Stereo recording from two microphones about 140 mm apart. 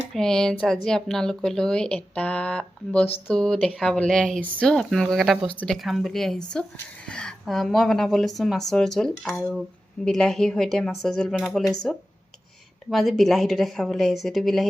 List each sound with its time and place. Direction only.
0.1 s speech: 5° left (ahead or behind)